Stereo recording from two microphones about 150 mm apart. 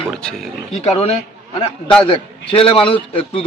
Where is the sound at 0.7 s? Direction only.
45° left (ahead or behind).